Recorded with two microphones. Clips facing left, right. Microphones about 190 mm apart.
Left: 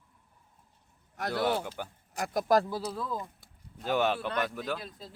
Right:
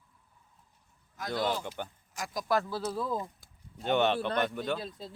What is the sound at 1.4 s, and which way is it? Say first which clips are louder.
Speech: left 2 dB; 65° left (ahead or behind).